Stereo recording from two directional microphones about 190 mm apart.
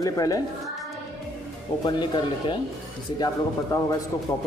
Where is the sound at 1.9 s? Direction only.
25° left (ahead or behind).